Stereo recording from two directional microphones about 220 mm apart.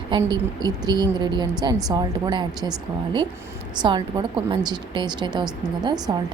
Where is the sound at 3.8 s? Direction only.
20° right (ahead or behind).